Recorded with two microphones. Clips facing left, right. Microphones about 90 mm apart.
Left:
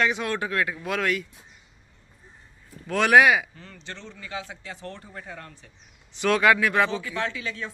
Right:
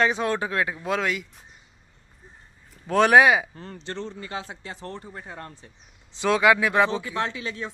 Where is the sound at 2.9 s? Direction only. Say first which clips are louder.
Right 1 dB; 30° right (ahead or behind).